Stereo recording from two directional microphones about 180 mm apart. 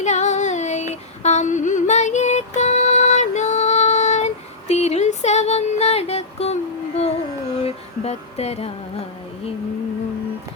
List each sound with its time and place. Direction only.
0.0 s female singing: 40° left (ahead or behind)
4.7 s a sound: 40° left (ahead or behind)
7.6 s music: 35° left (ahead or behind)